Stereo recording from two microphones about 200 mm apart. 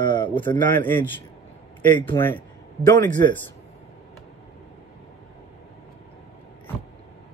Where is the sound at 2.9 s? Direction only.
20° left (ahead or behind).